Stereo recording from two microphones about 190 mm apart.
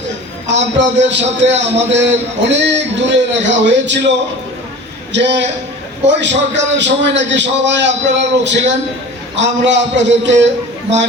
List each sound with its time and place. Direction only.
0.4 s a man's voice: 70° right (ahead or behind)
5.1 s a man's voice: 70° right (ahead or behind)